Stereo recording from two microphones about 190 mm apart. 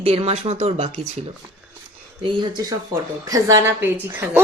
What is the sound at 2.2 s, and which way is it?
A woman's voice, 25° right (ahead or behind).